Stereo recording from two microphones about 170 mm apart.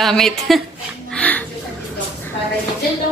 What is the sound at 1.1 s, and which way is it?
Music, 10° left (ahead or behind).